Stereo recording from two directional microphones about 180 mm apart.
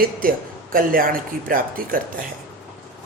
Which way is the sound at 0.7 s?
50° right (ahead or behind).